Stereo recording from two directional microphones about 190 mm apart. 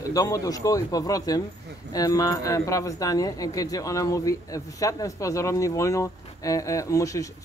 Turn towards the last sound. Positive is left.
turn(degrees=15)  # may be behind; listen again after turning